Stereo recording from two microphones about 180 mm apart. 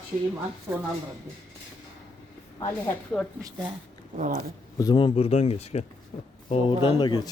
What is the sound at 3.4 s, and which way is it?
Speech, 20° right (ahead or behind).